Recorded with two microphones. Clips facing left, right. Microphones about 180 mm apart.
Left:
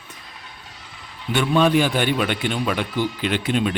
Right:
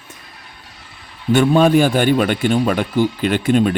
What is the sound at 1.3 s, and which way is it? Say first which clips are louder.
A man's voice: right 5 dB; 45° right (ahead or behind).